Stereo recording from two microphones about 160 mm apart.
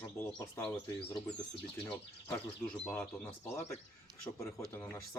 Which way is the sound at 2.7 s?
10° left (ahead or behind).